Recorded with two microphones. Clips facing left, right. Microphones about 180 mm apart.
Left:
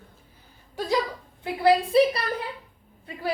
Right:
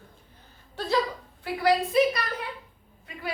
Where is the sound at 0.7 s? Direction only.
10° left (ahead or behind).